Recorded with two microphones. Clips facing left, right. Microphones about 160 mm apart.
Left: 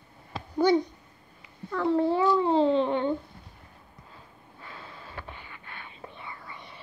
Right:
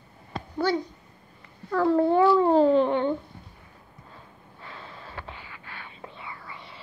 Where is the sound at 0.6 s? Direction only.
20° left (ahead or behind).